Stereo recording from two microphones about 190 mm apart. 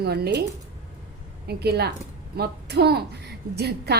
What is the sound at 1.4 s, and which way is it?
A woman's voice, 60° right (ahead or behind).